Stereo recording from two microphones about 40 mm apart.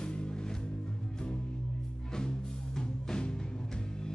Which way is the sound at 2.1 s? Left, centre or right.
Centre.